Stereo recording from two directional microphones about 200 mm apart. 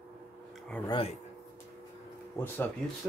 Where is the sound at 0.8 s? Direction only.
25° left (ahead or behind).